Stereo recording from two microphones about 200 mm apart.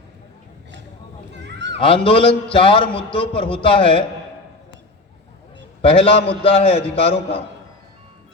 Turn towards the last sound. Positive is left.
turn(degrees=30)  # may be behind; listen again after turning